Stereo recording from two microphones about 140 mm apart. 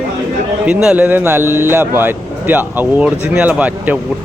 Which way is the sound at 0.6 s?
5° right (ahead or behind).